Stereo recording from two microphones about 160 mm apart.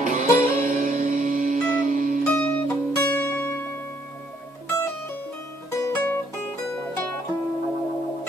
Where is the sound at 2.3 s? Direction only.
10° left (ahead or behind).